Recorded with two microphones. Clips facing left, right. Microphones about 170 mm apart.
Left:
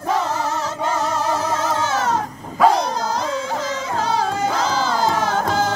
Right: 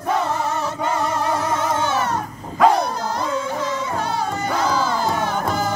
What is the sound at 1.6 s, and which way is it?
Music, 90° left.